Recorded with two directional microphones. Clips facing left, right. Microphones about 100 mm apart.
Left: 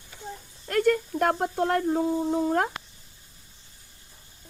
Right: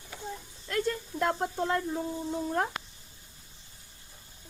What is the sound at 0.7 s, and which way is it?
Speech, 60° left (ahead or behind).